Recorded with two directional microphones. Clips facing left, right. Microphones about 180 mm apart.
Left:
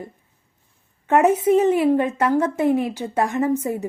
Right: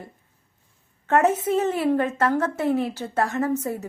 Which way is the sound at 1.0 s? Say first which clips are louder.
Left 4 dB; 15° left (ahead or behind).